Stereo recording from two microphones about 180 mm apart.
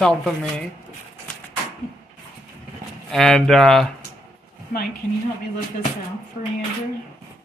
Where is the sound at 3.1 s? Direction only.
Centre (ahead or behind).